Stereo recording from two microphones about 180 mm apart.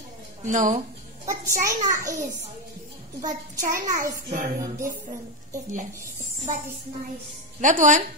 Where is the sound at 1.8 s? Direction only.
45° right (ahead or behind).